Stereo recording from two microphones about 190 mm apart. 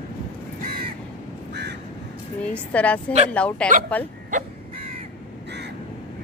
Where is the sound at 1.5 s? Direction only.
60° right (ahead or behind).